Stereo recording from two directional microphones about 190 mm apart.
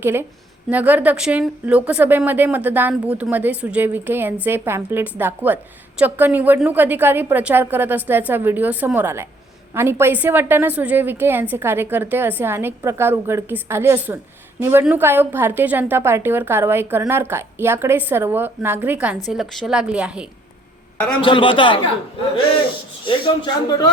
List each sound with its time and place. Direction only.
0.0 s a woman's voice: 10° right (ahead or behind)
21.2 s speech: 25° left (ahead or behind)
23.0 s speech: 25° left (ahead or behind)